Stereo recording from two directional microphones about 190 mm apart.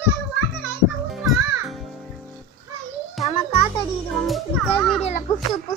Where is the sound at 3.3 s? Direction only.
30° left (ahead or behind).